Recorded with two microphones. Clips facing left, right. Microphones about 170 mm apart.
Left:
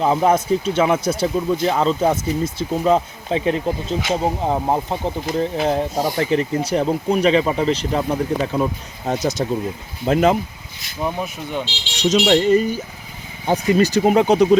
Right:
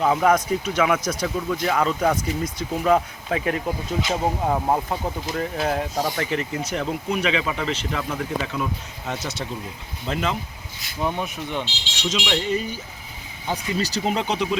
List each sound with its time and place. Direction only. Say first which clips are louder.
0.0 s speech: left 2 dB; 30° left (ahead or behind); by 10.3 s 45° left (ahead or behind)
11.0 s speech: left 2 dB; 5° left (ahead or behind)
11.6 s speech: left 8 dB; 40° left (ahead or behind)